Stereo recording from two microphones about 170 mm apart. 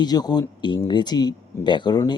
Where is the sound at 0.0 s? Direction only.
25° left (ahead or behind).